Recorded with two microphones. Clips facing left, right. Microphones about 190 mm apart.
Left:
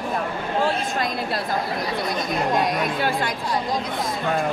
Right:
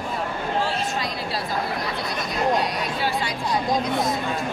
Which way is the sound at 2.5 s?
55° left (ahead or behind).